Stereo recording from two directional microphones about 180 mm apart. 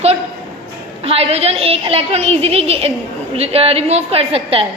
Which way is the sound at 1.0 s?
35° right (ahead or behind).